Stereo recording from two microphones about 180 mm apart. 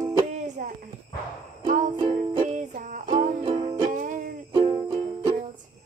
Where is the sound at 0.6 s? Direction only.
50° right (ahead or behind).